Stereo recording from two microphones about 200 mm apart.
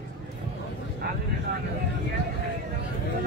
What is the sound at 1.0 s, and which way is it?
Vehicle, 55° right (ahead or behind).